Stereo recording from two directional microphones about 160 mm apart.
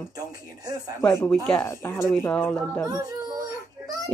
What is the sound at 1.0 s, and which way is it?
A woman's voice, 20° left (ahead or behind).